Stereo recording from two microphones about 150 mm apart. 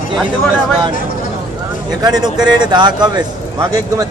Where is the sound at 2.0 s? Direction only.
25° right (ahead or behind).